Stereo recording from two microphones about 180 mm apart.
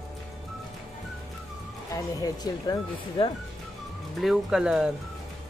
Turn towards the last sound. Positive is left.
turn(degrees=-5)  # may be behind; listen again after turning